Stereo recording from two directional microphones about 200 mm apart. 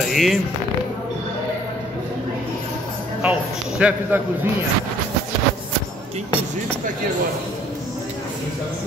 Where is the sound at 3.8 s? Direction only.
5° right (ahead or behind).